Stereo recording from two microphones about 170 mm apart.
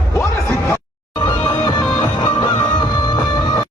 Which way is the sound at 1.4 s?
25° left (ahead or behind).